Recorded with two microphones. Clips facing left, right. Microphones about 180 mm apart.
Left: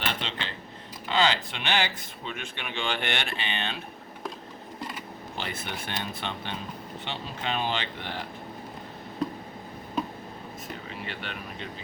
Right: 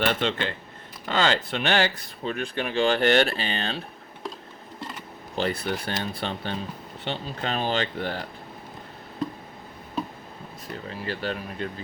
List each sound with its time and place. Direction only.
0.0 s speech: 50° right (ahead or behind)
5.4 s speech: 40° right (ahead or behind)
10.8 s speech: 35° right (ahead or behind)